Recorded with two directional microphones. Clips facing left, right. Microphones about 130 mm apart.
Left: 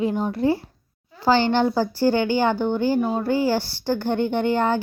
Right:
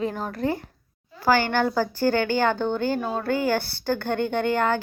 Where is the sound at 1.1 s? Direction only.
20° left (ahead or behind).